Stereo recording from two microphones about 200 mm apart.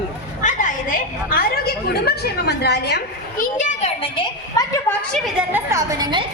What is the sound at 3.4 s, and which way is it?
Speech, 40° left (ahead or behind).